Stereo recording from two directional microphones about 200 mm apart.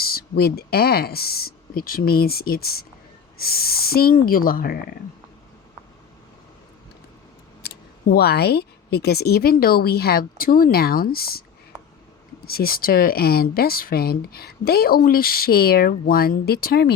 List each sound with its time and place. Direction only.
0.0 s speech: 50° left (ahead or behind)
7.6 s speech: 55° left (ahead or behind)
12.5 s speech: 50° left (ahead or behind)